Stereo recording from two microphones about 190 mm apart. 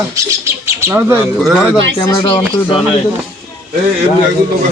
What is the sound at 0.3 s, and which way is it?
Speech, 15° right (ahead or behind).